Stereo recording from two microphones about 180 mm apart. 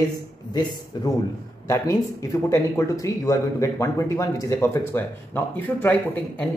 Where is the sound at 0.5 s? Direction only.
20° left (ahead or behind).